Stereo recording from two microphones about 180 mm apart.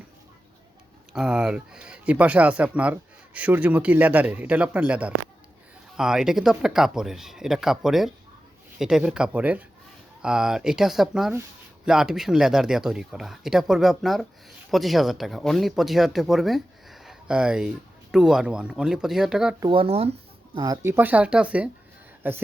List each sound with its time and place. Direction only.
1.1 s speech: 5° right (ahead or behind)
19.5 s speech: 25° right (ahead or behind); by 22.4 s 10° right (ahead or behind)